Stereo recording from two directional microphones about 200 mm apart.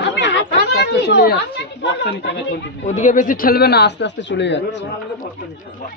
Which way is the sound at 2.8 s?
35° left (ahead or behind).